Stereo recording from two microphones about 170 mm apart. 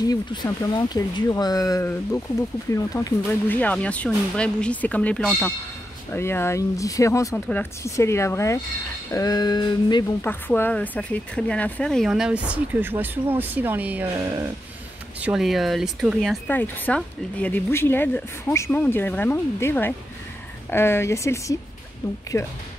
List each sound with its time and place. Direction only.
0.0 s speech: 25° left (ahead or behind); by 5.5 s 5° left (ahead or behind)
6.1 s speech: 15° left (ahead or behind)
10.2 s speech: 10° left (ahead or behind)
16.4 s speech: 10° left (ahead or behind)